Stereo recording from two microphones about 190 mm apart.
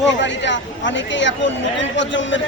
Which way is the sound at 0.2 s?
70° left (ahead or behind).